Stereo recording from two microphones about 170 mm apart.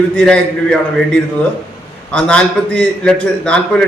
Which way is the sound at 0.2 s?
5° left (ahead or behind).